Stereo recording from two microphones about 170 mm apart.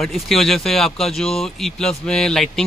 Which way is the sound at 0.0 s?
Centre (ahead or behind).